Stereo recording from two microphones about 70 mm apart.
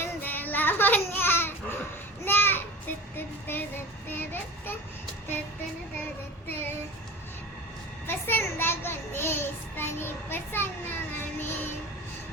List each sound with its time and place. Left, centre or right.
0.0 s a sound: left
3.2 s child singing: left
8.0 s child singing: left